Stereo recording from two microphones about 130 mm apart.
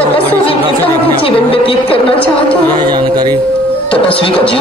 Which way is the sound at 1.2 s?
45° left (ahead or behind).